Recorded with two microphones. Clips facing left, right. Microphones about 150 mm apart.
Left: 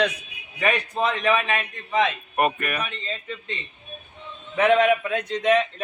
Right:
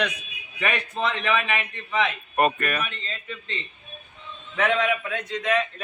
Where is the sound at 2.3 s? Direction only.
15° left (ahead or behind).